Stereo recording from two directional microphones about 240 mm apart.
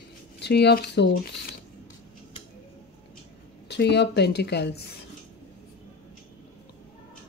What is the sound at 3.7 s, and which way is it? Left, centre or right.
A woman's voice, left.